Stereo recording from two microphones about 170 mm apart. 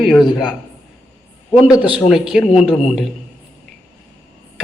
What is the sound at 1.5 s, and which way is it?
Speech, 20° left (ahead or behind).